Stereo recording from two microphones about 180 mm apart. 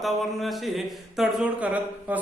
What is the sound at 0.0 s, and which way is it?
A man's voice, centre (ahead or behind).